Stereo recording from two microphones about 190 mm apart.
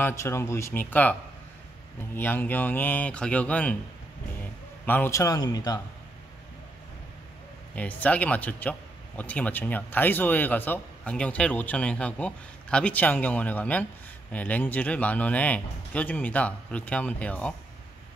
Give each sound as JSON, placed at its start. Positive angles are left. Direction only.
{"t": 0.0, "sound": "a man's voice", "side_deg": 15}
{"t": 2.1, "sound": "a man's voice", "side_deg": 10}
{"t": 4.8, "sound": "a man's voice", "side_deg": 10}
{"t": 7.7, "sound": "a man's voice", "side_deg": 5}